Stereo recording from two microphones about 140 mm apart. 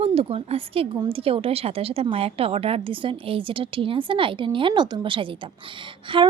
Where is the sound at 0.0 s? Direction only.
45° right (ahead or behind).